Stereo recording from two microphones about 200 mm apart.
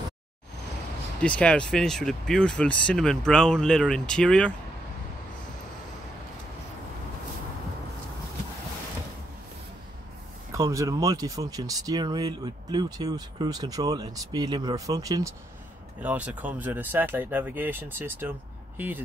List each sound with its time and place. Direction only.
1.2 s speech: 5° left (ahead or behind)
10.5 s speech: 15° right (ahead or behind)